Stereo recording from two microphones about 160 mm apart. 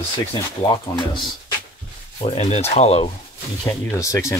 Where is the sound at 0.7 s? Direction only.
30° left (ahead or behind).